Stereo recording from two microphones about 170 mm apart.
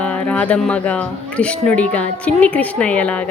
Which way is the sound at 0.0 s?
5° left (ahead or behind).